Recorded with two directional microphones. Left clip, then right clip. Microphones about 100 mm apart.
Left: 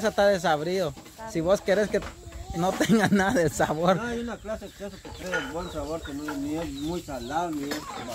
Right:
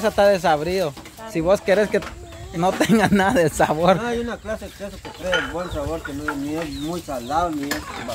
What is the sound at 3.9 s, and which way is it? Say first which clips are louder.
Speech: right 7 dB; 40° right (ahead or behind).